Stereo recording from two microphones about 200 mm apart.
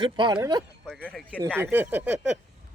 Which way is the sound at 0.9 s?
5° left (ahead or behind).